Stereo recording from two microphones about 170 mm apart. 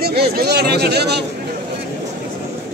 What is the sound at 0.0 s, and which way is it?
Speech, 70° right (ahead or behind).